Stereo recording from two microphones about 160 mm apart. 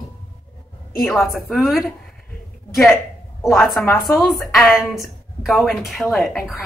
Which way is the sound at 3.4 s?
Centre (ahead or behind).